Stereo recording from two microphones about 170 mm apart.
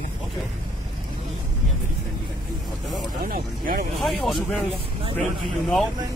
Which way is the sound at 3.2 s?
60° right (ahead or behind).